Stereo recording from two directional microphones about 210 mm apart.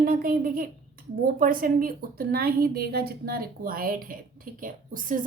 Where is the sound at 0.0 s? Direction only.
40° right (ahead or behind).